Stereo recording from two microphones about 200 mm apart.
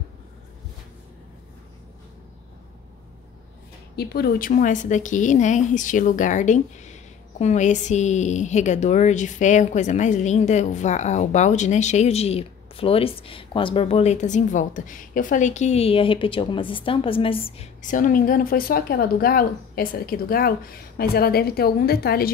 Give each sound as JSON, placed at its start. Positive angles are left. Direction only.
{"t": 3.9, "sound": "a woman's voice", "side_deg": 50}